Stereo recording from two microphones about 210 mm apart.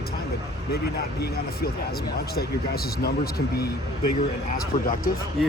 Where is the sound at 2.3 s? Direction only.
45° left (ahead or behind).